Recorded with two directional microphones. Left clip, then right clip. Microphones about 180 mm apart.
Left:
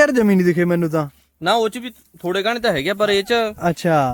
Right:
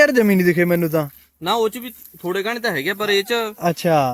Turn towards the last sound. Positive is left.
turn(degrees=0)  # may be behind; listen again after turning